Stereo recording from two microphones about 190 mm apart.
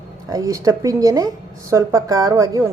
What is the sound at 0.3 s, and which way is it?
Speech, 15° right (ahead or behind).